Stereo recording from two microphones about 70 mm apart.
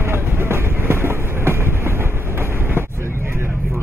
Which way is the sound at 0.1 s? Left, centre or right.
Right.